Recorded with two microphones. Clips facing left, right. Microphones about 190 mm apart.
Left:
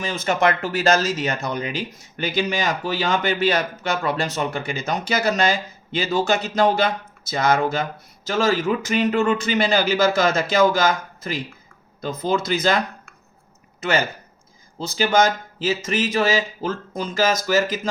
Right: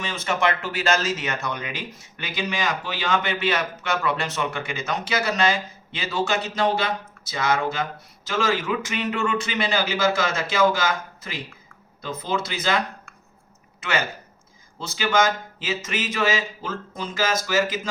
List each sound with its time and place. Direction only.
0.3 s speech: 40° left (ahead or behind)
14.8 s speech: 40° left (ahead or behind)